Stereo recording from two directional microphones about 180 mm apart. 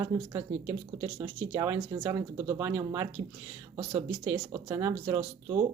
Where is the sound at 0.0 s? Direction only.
20° right (ahead or behind).